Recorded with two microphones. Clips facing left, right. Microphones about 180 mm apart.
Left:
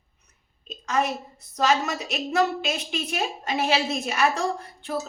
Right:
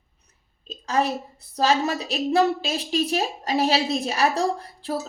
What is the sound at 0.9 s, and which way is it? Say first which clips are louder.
A woman's voice: right 2 dB; 35° right (ahead or behind).